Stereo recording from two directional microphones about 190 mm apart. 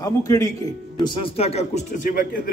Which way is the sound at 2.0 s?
50° left (ahead or behind).